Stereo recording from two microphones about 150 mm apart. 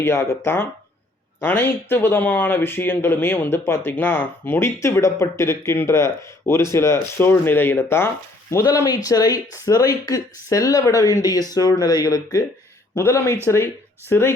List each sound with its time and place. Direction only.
0.0 s speech: 15° left (ahead or behind)